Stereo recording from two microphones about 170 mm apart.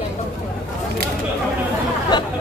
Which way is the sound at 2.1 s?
25° left (ahead or behind).